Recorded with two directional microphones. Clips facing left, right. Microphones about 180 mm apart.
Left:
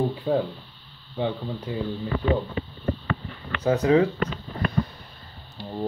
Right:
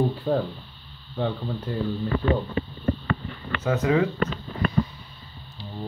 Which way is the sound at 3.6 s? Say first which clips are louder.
Left 3 dB; 35° left (ahead or behind).